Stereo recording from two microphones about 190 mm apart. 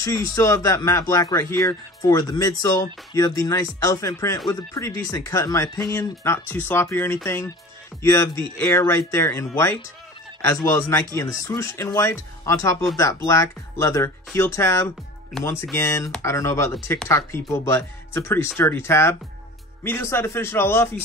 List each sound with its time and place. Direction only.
0.3 s speech: 20° left (ahead or behind)
15.3 s speech: centre (ahead or behind)
15.7 s speech: 15° left (ahead or behind)